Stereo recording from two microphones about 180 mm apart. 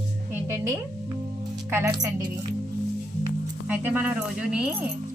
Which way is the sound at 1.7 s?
15° right (ahead or behind).